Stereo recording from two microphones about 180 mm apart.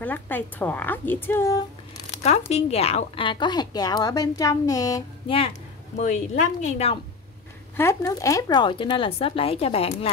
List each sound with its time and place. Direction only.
0.0 s a woman's voice: 10° left (ahead or behind)
2.5 s a woman's voice: 35° left (ahead or behind); by 5.0 s 20° left (ahead or behind)
5.9 s a woman's voice: 40° left (ahead or behind)
7.7 s a woman's voice: 15° left (ahead or behind); by 10.1 s 35° left (ahead or behind)